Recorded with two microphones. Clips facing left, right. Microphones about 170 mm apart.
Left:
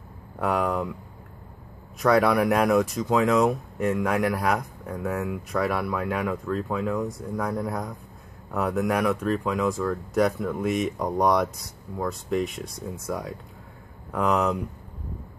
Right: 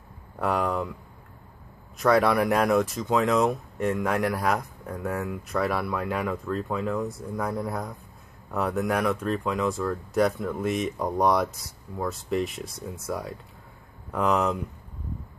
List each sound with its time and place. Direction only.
0.4 s speech: centre (ahead or behind)
2.0 s speech: centre (ahead or behind)